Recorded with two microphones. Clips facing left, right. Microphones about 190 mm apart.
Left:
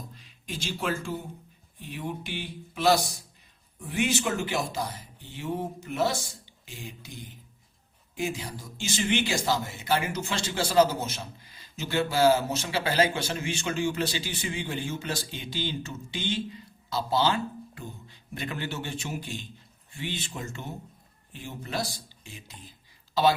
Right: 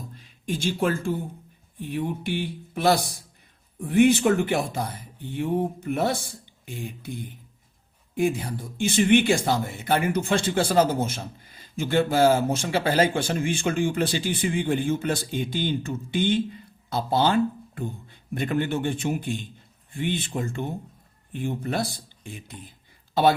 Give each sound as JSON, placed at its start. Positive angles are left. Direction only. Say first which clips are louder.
{"t": 0.1, "sound": "speech", "louder": "right 8 dB", "side_deg": -50}